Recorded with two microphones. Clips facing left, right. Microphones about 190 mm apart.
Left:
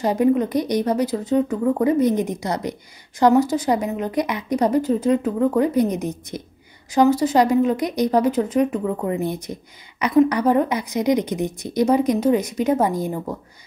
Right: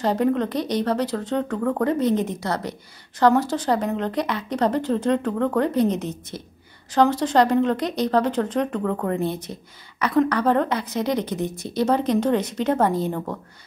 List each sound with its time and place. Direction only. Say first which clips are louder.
0.0 s speech: left 3 dB; 10° left (ahead or behind)